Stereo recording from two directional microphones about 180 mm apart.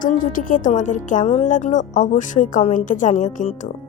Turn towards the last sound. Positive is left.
turn(degrees=45)  # may be behind; listen again after turning